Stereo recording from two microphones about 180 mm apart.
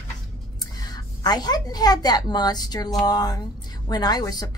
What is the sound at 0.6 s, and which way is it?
A woman's voice, 20° left (ahead or behind).